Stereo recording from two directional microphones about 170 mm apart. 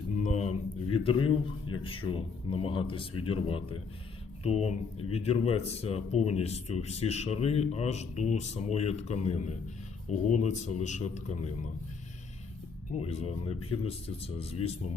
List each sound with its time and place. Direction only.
0.2 s mantra: 40° left (ahead or behind)
1.7 s speech: 30° left (ahead or behind)
13.0 s speech: 35° left (ahead or behind)